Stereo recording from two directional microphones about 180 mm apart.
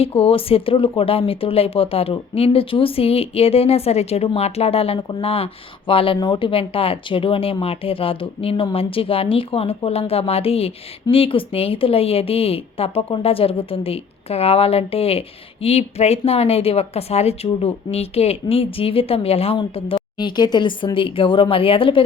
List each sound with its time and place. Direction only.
0.0 s speech: 30° left (ahead or behind)